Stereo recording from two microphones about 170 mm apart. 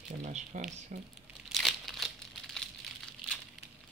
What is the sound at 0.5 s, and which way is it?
Speech, 45° right (ahead or behind).